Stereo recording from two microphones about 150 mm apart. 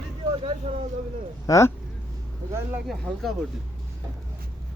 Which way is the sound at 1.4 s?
20° left (ahead or behind).